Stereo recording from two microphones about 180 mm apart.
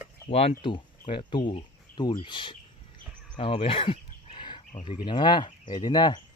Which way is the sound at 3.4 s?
30° left (ahead or behind).